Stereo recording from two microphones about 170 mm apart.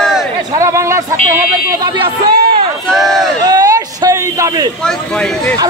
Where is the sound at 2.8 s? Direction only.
Centre (ahead or behind).